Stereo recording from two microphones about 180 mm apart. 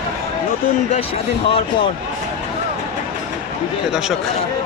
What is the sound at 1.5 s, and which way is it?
Speech, 30° left (ahead or behind).